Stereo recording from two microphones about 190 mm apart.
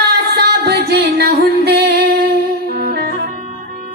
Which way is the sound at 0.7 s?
55° right (ahead or behind).